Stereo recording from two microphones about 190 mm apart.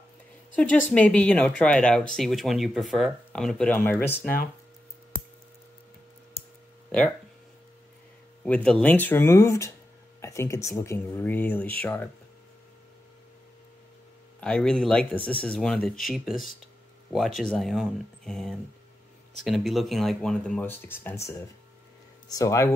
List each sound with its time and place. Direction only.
0.9 s speech: 5° left (ahead or behind)
8.5 s speech: 5° left (ahead or behind)
14.4 s speech: 5° left (ahead or behind)